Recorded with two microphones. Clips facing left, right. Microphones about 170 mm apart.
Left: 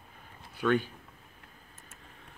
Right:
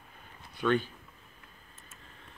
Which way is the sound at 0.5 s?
10° left (ahead or behind).